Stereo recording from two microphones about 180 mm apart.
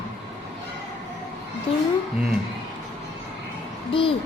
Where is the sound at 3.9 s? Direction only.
30° left (ahead or behind).